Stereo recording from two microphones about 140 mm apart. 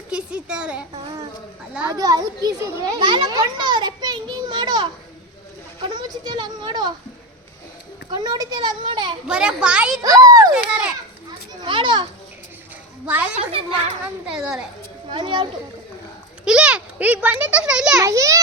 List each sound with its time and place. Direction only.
0.1 s a sound: 5° right (ahead or behind)
1.9 s a child's voice: 25° right (ahead or behind)
8.1 s a child's voice: 30° right (ahead or behind)
9.2 s a child's voice: 5° right (ahead or behind)
10.0 s a child's voice: 25° right (ahead or behind)
11.6 s a child's voice: 35° right (ahead or behind)
13.4 s a child's voice: 45° right (ahead or behind)
14.3 s a child's voice: 5° right (ahead or behind)
15.1 s a child's voice: 40° right (ahead or behind)
16.5 s a child's voice: 5° right (ahead or behind)
18.0 s a child's voice: 20° right (ahead or behind)